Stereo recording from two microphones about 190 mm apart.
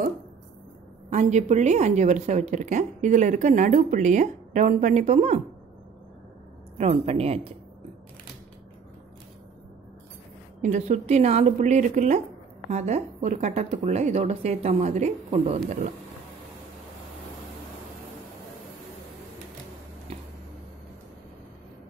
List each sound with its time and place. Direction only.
1.1 s a woman's voice: 35° right (ahead or behind)
6.8 s a woman's voice: 35° right (ahead or behind)
10.6 s a woman's voice: 40° right (ahead or behind)
15.6 s speech: 45° right (ahead or behind)